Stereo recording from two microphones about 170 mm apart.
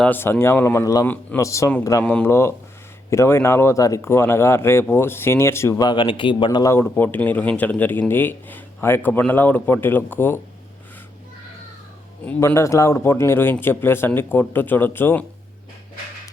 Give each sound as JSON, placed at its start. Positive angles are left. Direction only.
{"t": 0.0, "sound": "speech", "side_deg": 10}
{"t": 12.2, "sound": "speech", "side_deg": 10}